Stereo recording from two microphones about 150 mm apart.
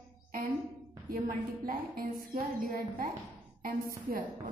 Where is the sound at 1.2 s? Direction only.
70° right (ahead or behind).